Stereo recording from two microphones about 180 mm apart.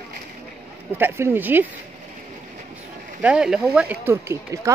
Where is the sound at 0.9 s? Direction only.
10° right (ahead or behind).